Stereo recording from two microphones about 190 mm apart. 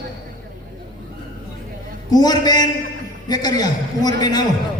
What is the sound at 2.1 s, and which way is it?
A man's voice, 20° left (ahead or behind).